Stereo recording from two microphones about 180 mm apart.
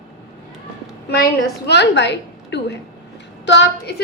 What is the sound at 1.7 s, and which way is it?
A woman's voice, 70° left (ahead or behind).